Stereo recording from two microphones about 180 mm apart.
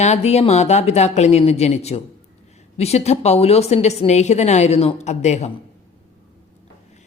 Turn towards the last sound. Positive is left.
turn(degrees=40)  # may be behind; listen again after turning